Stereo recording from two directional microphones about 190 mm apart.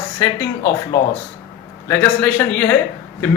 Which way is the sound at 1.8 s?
10° left (ahead or behind).